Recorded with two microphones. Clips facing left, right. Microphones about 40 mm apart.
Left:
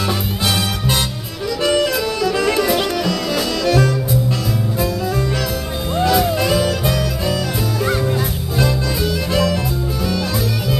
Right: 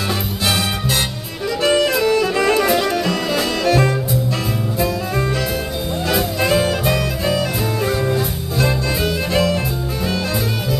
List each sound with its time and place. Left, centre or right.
1.6 s music: right
6.5 s music: right
9.0 s music: right